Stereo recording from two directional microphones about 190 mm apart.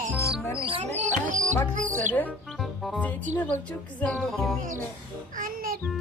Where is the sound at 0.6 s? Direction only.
30° right (ahead or behind).